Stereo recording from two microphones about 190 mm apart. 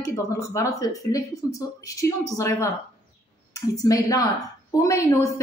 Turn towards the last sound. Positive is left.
turn(degrees=15)  # may be behind; listen again after turning